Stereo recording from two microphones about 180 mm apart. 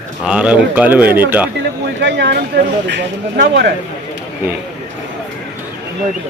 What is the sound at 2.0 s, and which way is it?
Speech, 70° right (ahead or behind).